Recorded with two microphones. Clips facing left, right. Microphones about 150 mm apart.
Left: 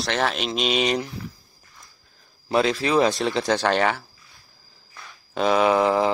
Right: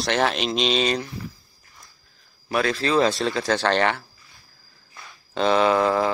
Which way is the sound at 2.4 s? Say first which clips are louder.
Left 3 dB; 25° left (ahead or behind).